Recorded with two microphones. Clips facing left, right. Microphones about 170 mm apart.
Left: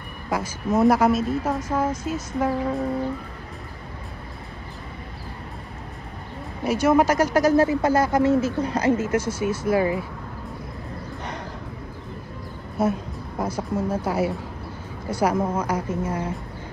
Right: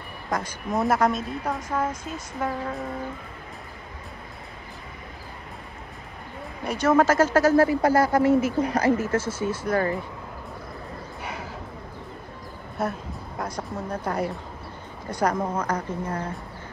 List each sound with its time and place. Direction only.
0.7 s a woman's voice: centre (ahead or behind)
6.6 s speech: 5° left (ahead or behind)
12.8 s a woman's voice: centre (ahead or behind)